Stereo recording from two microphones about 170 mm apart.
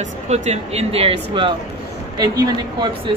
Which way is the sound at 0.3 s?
40° right (ahead or behind).